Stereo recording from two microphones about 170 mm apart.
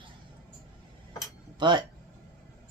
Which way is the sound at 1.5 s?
25° right (ahead or behind).